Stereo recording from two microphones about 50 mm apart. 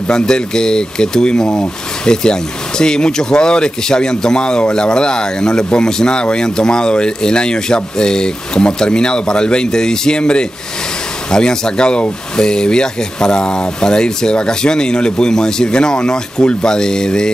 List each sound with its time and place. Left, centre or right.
0.1 s speech: centre